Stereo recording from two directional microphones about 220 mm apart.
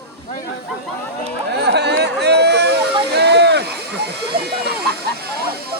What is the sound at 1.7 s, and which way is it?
Chatter, 50° right (ahead or behind).